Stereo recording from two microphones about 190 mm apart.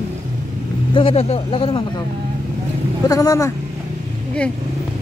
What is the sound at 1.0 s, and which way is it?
Speech, 30° left (ahead or behind).